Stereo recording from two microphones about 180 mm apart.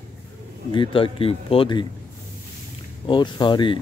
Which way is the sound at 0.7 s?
30° left (ahead or behind).